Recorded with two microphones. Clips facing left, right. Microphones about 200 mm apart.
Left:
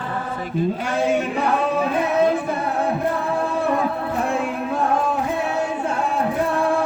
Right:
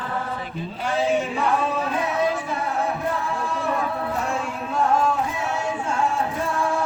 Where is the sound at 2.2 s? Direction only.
55° left (ahead or behind).